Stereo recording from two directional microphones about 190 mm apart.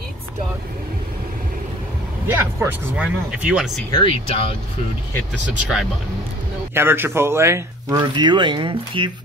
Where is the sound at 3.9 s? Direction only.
30° left (ahead or behind).